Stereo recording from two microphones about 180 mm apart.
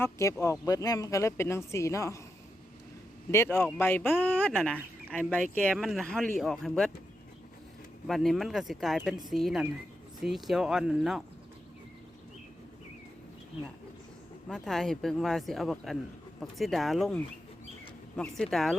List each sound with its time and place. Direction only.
0.0 s a woman's voice: 15° left (ahead or behind)
3.3 s a woman's voice: 15° left (ahead or behind)
8.0 s speech: centre (ahead or behind)
14.4 s speech: centre (ahead or behind)
18.2 s speech: centre (ahead or behind)